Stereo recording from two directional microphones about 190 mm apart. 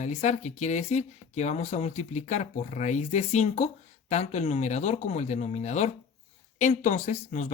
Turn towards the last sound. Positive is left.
turn(degrees=40)  # may be behind; listen again after turning